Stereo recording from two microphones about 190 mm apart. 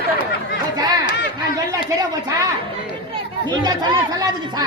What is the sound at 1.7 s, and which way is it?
Speech, 20° right (ahead or behind).